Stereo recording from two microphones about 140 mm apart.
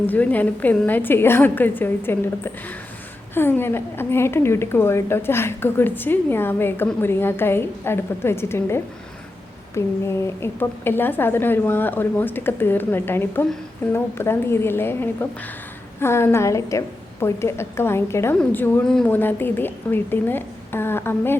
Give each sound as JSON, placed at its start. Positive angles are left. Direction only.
{"t": 0.1, "sound": "a woman's voice", "side_deg": 10}